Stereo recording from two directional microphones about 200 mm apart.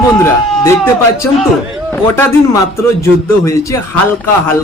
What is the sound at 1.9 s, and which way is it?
A man's voice, 10° left (ahead or behind).